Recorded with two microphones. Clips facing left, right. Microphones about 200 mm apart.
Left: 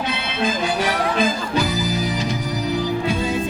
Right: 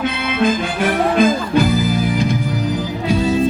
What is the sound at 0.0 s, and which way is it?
Music, 55° right (ahead or behind).